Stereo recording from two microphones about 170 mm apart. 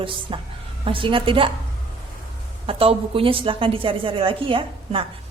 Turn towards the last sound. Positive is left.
turn(degrees=-30)  # may be behind; listen again after turning